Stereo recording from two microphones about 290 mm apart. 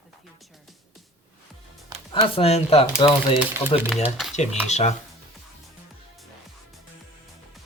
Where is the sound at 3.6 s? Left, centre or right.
Centre.